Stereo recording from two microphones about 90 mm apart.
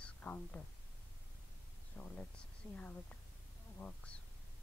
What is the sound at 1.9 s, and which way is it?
Speech, 25° left (ahead or behind).